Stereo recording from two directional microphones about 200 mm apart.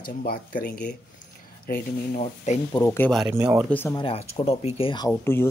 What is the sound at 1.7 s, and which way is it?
Speech, 35° left (ahead or behind).